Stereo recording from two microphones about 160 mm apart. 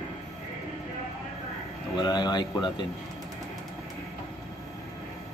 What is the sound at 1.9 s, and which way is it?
Speech, 25° left (ahead or behind).